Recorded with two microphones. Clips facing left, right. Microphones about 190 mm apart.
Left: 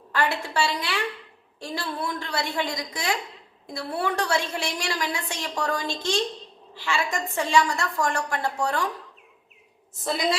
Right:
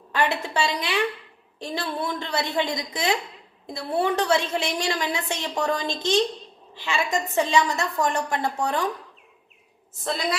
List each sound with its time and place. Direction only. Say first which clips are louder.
0.1 s a woman's voice: right 2 dB; 20° right (ahead or behind)
9.9 s a woman's voice: even; centre (ahead or behind)